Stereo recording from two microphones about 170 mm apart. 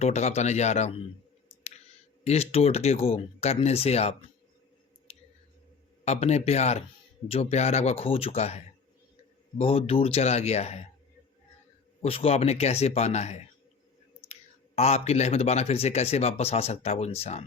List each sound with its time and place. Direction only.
0.0 s speech: 40° left (ahead or behind)
2.2 s speech: 35° left (ahead or behind)
5.1 s a sound: 35° left (ahead or behind)
6.1 s speech: 40° left (ahead or behind)
12.0 s speech: 35° left (ahead or behind)
14.8 s speech: 40° left (ahead or behind)